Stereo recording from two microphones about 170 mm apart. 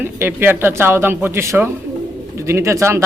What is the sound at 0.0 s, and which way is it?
Speech, 10° right (ahead or behind).